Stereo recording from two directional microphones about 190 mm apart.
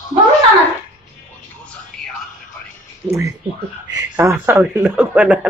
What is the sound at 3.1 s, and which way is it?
Speech, 15° right (ahead or behind).